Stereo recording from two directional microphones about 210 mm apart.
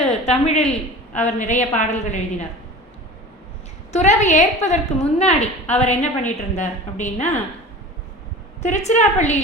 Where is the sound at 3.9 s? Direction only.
35° left (ahead or behind).